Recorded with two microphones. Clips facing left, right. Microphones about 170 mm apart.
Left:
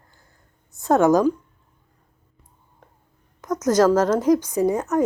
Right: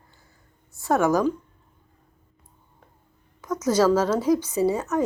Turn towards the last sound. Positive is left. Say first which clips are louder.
# left 2 dB
turn(degrees=15)  # may be behind; listen again after turning